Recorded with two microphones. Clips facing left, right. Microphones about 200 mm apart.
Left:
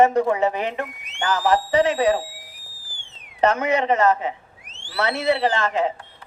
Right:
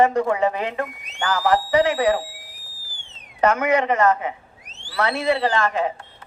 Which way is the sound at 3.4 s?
25° left (ahead or behind).